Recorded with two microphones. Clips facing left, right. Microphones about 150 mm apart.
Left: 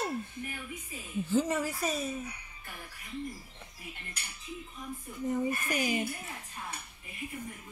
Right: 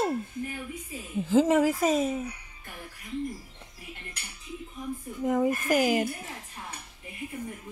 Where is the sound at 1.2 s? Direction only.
90° right.